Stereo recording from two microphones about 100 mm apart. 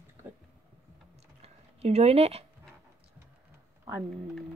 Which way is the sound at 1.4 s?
90° right.